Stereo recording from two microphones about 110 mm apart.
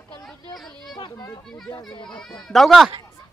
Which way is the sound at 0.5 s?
Centre (ahead or behind).